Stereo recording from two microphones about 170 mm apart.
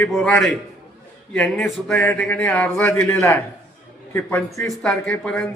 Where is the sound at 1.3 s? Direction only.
10° left (ahead or behind).